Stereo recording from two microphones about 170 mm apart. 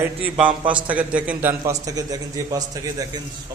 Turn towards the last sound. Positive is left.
turn(degrees=-20)  # may be behind; listen again after turning